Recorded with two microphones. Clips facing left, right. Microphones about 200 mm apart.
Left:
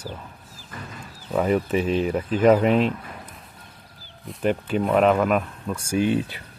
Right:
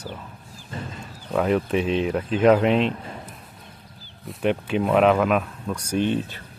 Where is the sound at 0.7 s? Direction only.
25° right (ahead or behind).